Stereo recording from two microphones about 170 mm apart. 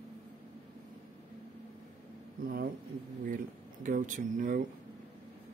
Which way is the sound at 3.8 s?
50° right (ahead or behind).